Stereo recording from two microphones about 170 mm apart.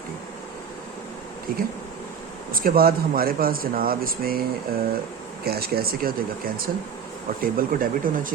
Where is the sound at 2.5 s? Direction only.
60° right (ahead or behind).